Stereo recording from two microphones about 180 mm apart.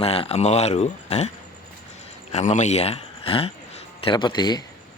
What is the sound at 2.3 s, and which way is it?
Speech, 35° left (ahead or behind).